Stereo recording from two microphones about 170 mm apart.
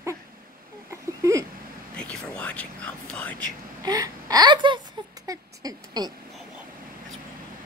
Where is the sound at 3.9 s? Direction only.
25° right (ahead or behind).